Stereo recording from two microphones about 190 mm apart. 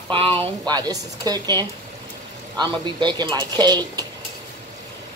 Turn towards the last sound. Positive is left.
turn(degrees=-20)  # may be behind; listen again after turning